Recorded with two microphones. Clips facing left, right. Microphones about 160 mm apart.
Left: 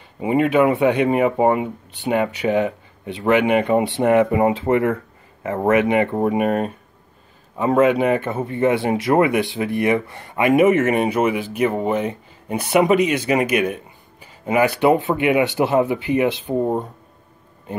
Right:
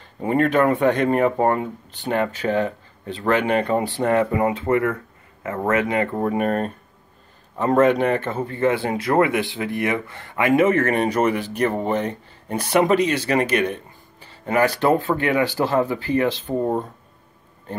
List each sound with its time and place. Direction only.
0.2 s speech: 10° left (ahead or behind)
14.2 s a sound: 10° left (ahead or behind)
14.8 s speech: 15° left (ahead or behind)